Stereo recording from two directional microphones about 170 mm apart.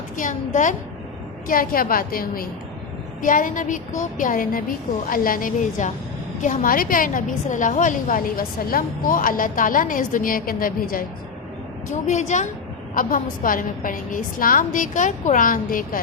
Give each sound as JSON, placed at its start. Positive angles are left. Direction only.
{"t": 0.2, "sound": "a woman's voice", "side_deg": 50}
{"t": 11.9, "sound": "a woman's voice", "side_deg": 45}